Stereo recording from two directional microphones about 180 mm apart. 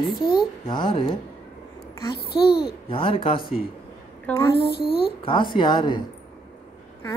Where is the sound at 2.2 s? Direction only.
65° left (ahead or behind).